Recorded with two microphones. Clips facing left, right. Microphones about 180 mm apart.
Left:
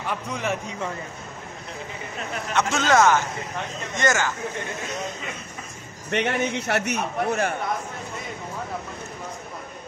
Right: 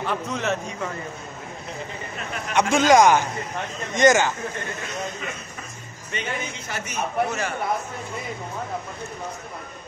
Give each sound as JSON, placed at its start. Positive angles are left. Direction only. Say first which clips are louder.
{"t": 0.3, "sound": "a man's voice", "louder": "even", "side_deg": 10}
{"t": 2.5, "sound": "a man's voice", "louder": "right 4 dB", "side_deg": -15}
{"t": 6.0, "sound": "a man's voice", "louder": "left 7 dB", "side_deg": 70}